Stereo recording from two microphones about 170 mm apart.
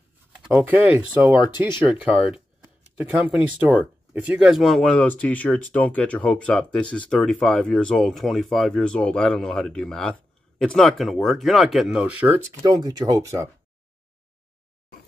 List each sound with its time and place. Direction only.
0.4 s speech: 5° right (ahead or behind)
12.6 s speech: 20° right (ahead or behind)